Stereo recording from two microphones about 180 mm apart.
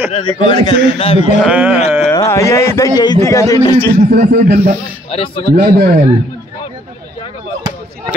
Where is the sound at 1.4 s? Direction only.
10° right (ahead or behind).